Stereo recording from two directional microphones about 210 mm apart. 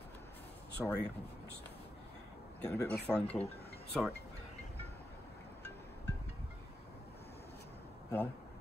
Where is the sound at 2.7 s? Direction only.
5° left (ahead or behind).